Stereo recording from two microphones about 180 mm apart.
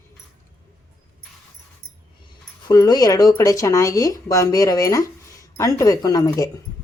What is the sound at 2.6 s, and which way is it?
Speech, 20° left (ahead or behind).